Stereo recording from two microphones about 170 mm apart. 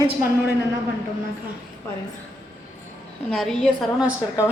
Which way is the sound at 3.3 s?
Centre (ahead or behind).